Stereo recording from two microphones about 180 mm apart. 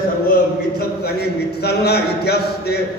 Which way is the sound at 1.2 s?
65° left (ahead or behind).